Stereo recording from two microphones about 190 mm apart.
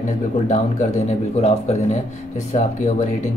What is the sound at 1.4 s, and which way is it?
Speech, 35° left (ahead or behind).